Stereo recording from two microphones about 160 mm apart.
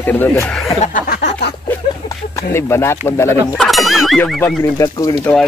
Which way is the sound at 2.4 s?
15° left (ahead or behind).